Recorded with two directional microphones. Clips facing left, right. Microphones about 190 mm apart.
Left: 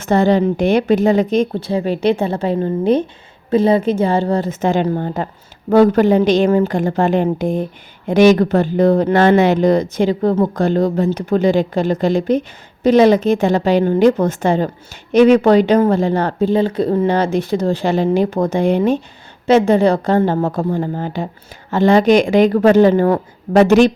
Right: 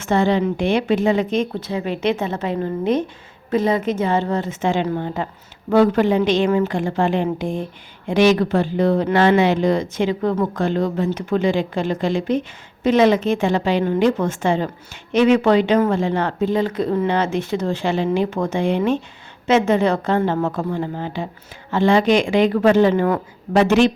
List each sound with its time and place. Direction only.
0.0 s speech: 40° left (ahead or behind)